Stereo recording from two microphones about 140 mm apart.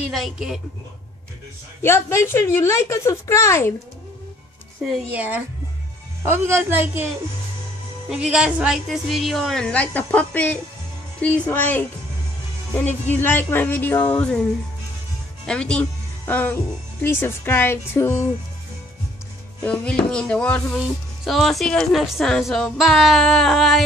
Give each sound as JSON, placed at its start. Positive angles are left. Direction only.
{"t": 0.1, "sound": "speech", "side_deg": 0}
{"t": 1.8, "sound": "a woman's voice", "side_deg": 15}
{"t": 5.1, "sound": "a woman's voice", "side_deg": -10}
{"t": 8.1, "sound": "speech", "side_deg": -5}
{"t": 13.1, "sound": "speech", "side_deg": 15}
{"t": 15.4, "sound": "speech", "side_deg": 5}
{"t": 19.6, "sound": "speech", "side_deg": 10}